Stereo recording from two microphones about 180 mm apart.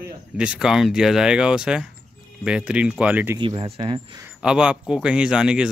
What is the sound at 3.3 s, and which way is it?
Speech, 30° right (ahead or behind).